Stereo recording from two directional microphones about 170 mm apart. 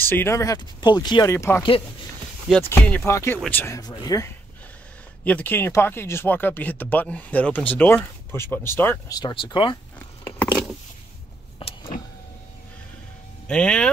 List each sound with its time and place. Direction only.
0.0 s speech: 15° left (ahead or behind)
2.7 s speech: 10° left (ahead or behind)
5.2 s speech: 10° left (ahead or behind)
9.2 s speech: 30° left (ahead or behind)
9.9 s a sound: 10° left (ahead or behind)
13.5 s speech: 5° left (ahead or behind)